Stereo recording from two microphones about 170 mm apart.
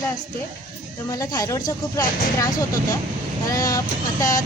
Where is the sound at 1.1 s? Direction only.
20° left (ahead or behind).